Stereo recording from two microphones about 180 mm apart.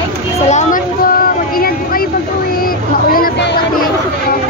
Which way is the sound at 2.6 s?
55° left (ahead or behind).